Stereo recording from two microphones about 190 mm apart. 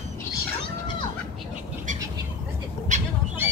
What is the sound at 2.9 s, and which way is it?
Bird, 40° right (ahead or behind).